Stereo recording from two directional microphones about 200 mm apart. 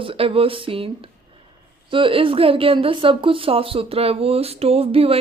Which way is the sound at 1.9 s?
25° right (ahead or behind).